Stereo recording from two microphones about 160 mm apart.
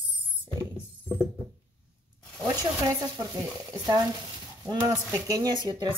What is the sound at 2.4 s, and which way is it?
Stir, 25° right (ahead or behind).